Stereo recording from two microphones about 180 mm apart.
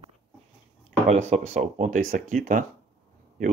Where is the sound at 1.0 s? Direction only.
40° right (ahead or behind).